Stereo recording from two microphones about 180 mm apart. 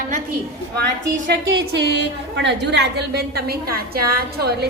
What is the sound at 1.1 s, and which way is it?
A woman's voice, 70° right (ahead or behind).